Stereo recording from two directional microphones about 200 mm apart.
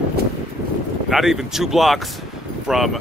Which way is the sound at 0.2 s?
50° right (ahead or behind).